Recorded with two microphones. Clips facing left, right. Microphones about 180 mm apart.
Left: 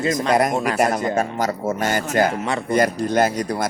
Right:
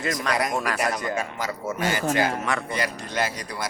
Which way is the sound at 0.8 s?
50° left (ahead or behind).